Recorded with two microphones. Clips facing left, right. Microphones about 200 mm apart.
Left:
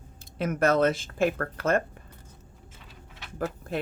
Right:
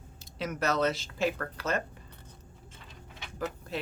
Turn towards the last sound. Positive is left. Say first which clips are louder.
# left 5 dB
turn(degrees=55)  # may be behind; listen again after turning